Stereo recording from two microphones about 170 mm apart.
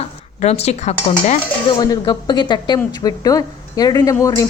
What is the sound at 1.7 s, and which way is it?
Speech, 25° left (ahead or behind).